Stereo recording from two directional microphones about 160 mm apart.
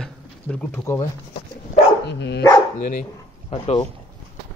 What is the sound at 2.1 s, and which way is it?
Dog, 90° left.